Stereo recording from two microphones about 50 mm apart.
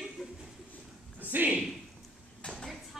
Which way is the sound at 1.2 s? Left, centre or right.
Right.